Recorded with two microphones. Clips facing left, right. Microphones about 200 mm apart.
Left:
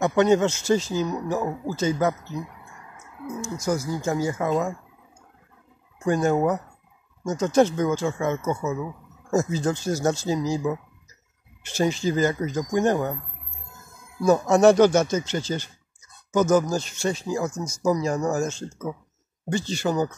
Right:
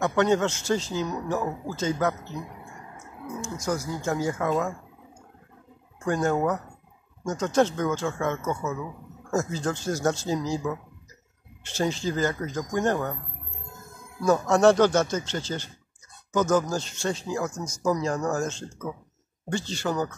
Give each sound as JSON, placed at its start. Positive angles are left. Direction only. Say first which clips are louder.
{"t": 0.0, "sound": "speech", "louder": "left 3 dB", "side_deg": 15}
{"t": 3.3, "sound": "a sound", "louder": "left 2 dB", "side_deg": 5}
{"t": 3.6, "sound": "speech", "louder": "left 3 dB", "side_deg": 15}
{"t": 4.1, "sound": "speech", "louder": "left 1 dB", "side_deg": 5}
{"t": 4.5, "sound": "speech", "louder": "left 2 dB", "side_deg": 15}
{"t": 6.0, "sound": "speech", "louder": "left 3 dB", "side_deg": 15}
{"t": 14.2, "sound": "speech", "louder": "left 3 dB", "side_deg": 15}
{"t": 17.6, "sound": "speech", "louder": "left 3 dB", "side_deg": 5}